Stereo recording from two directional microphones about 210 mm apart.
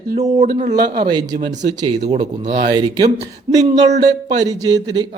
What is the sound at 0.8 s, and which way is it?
Speech, 20° right (ahead or behind).